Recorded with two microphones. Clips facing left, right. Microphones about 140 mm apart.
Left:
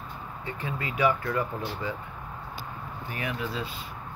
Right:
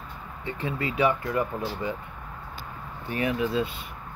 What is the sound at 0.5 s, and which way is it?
Speech, 25° right (ahead or behind).